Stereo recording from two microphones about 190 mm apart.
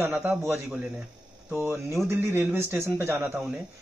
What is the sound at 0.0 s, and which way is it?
Speech, 10° right (ahead or behind).